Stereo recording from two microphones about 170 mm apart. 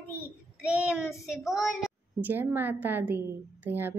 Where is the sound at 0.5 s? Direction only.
5° right (ahead or behind).